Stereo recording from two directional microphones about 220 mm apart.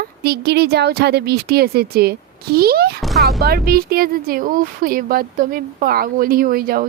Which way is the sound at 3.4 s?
45° right (ahead or behind).